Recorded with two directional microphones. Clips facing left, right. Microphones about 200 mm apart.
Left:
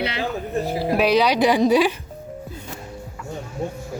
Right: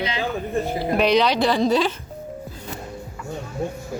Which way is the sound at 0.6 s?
5° left (ahead or behind).